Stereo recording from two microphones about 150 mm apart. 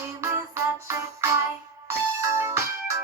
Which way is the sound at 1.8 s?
15° right (ahead or behind).